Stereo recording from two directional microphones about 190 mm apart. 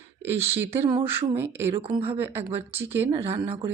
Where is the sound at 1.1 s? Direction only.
10° right (ahead or behind).